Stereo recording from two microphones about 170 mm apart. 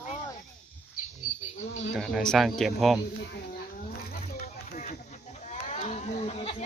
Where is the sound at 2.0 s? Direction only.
Centre (ahead or behind).